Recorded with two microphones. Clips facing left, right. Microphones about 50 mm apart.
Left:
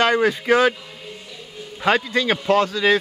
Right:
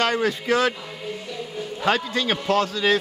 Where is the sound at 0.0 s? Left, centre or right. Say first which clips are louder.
Left 4 dB; left.